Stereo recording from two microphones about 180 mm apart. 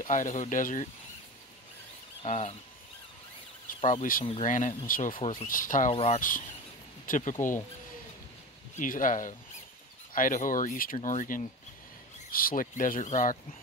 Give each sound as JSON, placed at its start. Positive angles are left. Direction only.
{"t": 0.0, "sound": "speech", "side_deg": 45}
{"t": 2.2, "sound": "speech", "side_deg": 40}
{"t": 3.6, "sound": "speech", "side_deg": 45}
{"t": 8.7, "sound": "speech", "side_deg": 50}